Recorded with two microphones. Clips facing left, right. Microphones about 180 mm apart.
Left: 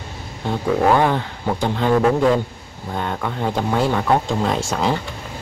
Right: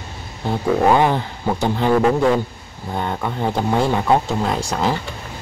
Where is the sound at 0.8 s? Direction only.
15° right (ahead or behind).